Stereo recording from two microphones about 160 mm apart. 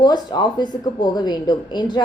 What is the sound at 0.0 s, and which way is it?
A woman's voice, 25° left (ahead or behind).